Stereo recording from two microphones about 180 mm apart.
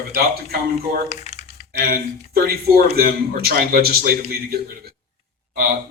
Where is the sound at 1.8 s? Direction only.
55° right (ahead or behind).